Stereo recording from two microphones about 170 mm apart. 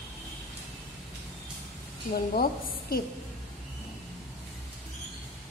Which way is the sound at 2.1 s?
60° left (ahead or behind).